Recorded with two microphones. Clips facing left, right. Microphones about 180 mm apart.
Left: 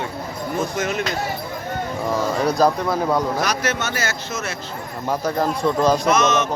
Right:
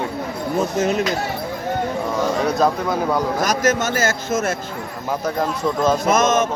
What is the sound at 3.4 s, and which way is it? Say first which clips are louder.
A man's voice: right 4 dB; 45° right (ahead or behind).